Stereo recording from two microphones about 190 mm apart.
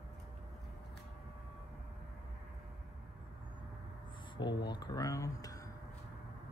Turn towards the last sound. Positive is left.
turn(degrees=20)  # may be behind; listen again after turning